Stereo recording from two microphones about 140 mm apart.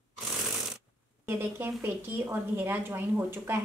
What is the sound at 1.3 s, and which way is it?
Speech, 15° right (ahead or behind).